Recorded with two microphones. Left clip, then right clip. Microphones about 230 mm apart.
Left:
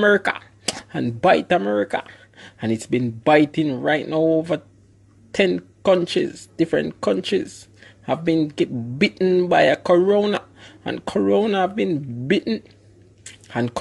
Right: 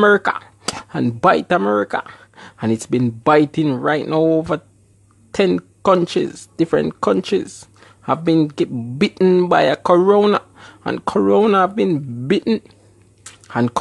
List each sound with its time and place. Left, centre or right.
0.1 s a sound: centre
1.0 s speech: centre
9.5 s speech: centre
13.5 s speech: centre